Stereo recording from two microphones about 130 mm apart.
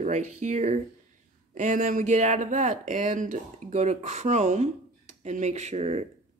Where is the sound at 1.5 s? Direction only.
75° right (ahead or behind); by 6.0 s 55° right (ahead or behind).